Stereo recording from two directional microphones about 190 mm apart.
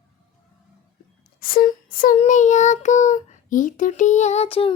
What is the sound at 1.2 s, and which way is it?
Child singing, 50° left (ahead or behind).